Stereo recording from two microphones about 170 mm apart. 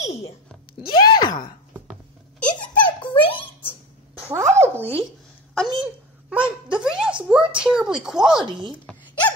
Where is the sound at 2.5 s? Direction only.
25° left (ahead or behind).